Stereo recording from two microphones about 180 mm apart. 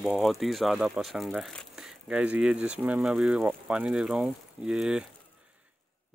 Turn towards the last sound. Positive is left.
turn(degrees=-5)  # may be behind; listen again after turning